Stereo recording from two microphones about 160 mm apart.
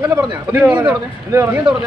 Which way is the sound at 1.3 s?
15° right (ahead or behind).